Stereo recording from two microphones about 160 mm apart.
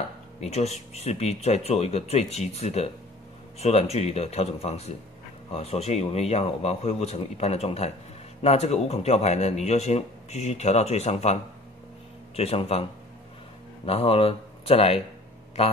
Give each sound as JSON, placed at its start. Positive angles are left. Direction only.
{"t": 0.4, "sound": "a man's voice", "side_deg": 45}
{"t": 12.4, "sound": "a man's voice", "side_deg": 40}
{"t": 13.8, "sound": "a man's voice", "side_deg": 40}